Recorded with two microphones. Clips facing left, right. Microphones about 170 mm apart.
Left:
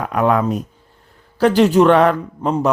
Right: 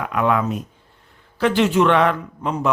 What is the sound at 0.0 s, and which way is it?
A man's voice, 40° left (ahead or behind).